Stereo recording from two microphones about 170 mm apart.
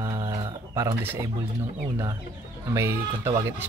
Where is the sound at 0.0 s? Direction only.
25° right (ahead or behind).